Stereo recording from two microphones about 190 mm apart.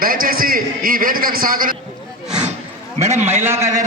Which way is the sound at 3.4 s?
15° right (ahead or behind).